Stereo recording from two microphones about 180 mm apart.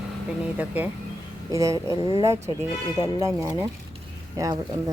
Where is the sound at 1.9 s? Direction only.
30° left (ahead or behind).